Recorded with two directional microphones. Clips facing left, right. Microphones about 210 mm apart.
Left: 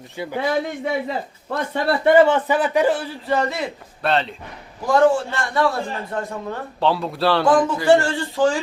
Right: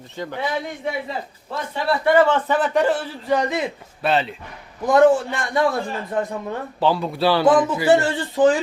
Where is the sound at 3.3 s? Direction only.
15° right (ahead or behind).